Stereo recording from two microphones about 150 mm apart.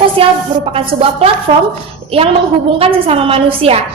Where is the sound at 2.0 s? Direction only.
40° right (ahead or behind).